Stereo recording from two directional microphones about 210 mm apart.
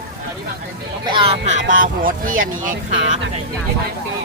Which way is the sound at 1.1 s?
25° right (ahead or behind).